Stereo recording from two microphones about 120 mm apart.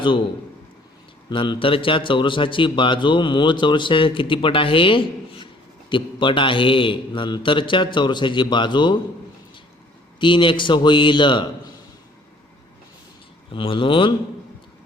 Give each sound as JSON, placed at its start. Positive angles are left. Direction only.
{"t": 0.0, "sound": "a man's voice", "side_deg": 45}
{"t": 1.3, "sound": "a man's voice", "side_deg": 45}
{"t": 10.2, "sound": "a man's voice", "side_deg": 45}
{"t": 13.5, "sound": "a man's voice", "side_deg": 45}